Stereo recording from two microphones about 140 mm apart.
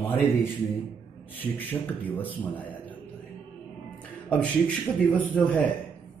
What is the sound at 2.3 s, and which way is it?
Speech, 10° left (ahead or behind).